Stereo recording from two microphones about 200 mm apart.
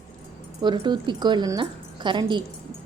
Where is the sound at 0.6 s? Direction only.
20° right (ahead or behind).